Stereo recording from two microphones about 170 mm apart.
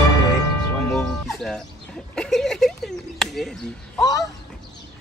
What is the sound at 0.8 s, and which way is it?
Speech, 5° left (ahead or behind).